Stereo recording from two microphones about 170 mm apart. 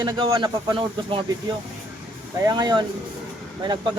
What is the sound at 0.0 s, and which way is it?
A man's voice, 25° right (ahead or behind).